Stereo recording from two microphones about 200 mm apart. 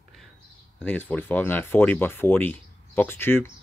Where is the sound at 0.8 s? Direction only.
10° left (ahead or behind).